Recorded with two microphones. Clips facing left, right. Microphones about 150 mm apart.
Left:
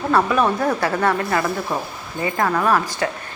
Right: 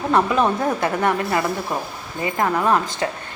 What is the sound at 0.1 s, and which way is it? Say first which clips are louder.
A woman's voice: even; 20° right (ahead or behind).